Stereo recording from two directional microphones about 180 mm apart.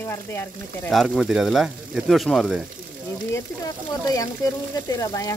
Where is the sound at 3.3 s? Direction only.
20° left (ahead or behind).